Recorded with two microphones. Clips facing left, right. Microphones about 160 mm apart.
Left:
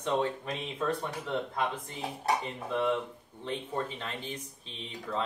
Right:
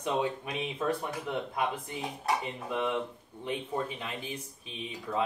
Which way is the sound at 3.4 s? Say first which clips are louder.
Right 1 dB; 10° right (ahead or behind).